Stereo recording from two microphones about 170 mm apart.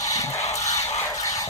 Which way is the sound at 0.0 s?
20° left (ahead or behind).